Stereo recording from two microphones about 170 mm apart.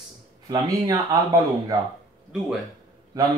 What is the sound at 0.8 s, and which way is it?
Speech, 20° right (ahead or behind).